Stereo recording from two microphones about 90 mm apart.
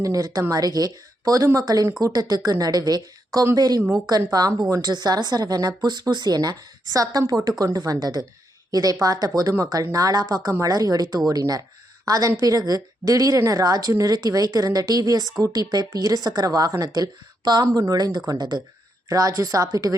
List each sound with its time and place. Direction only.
0.0 s speech: 40° right (ahead or behind)